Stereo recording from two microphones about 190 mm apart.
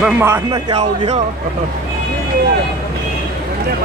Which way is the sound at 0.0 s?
15° right (ahead or behind).